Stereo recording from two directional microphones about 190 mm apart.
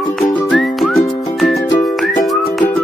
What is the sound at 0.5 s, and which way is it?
Music, centre (ahead or behind).